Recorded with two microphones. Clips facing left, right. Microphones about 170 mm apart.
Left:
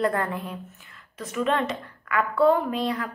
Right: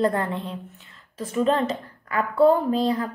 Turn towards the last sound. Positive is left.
turn(degrees=-30)  # may be behind; listen again after turning